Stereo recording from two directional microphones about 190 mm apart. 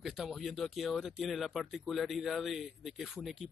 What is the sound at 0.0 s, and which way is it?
A man's voice, centre (ahead or behind).